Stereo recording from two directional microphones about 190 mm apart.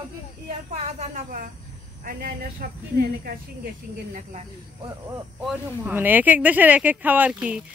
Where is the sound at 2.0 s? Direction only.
50° right (ahead or behind).